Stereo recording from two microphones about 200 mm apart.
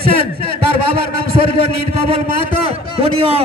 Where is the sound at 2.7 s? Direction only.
30° right (ahead or behind).